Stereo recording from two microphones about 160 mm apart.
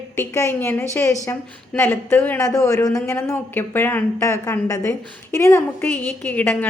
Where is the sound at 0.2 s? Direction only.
15° left (ahead or behind).